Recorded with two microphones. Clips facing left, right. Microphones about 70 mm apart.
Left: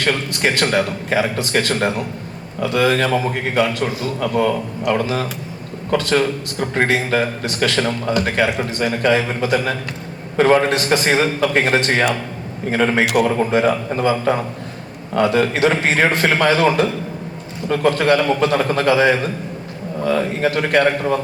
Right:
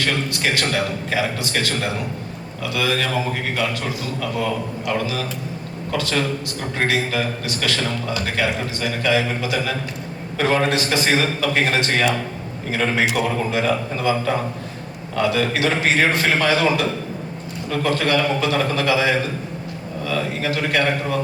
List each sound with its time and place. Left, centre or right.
0.0 s a man's voice: left
13.1 s a man's voice: left
13.5 s a man's voice: left